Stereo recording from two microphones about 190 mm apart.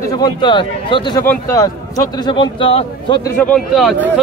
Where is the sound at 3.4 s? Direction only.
5° left (ahead or behind).